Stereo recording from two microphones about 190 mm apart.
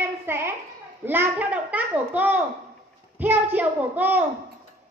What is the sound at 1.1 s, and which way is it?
A child's voice, 10° right (ahead or behind).